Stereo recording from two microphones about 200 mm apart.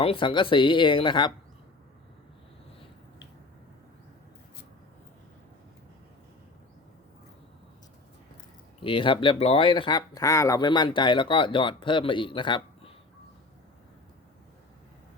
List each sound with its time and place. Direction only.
0.0 s speech: 25° left (ahead or behind)
8.8 s speech: 25° left (ahead or behind)